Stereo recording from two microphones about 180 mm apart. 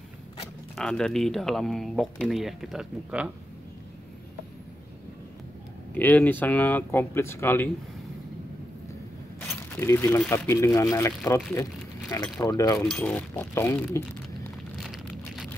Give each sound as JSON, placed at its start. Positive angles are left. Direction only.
{"t": 0.7, "sound": "speech", "side_deg": 5}
{"t": 5.9, "sound": "speech", "side_deg": 10}
{"t": 9.8, "sound": "speech", "side_deg": 15}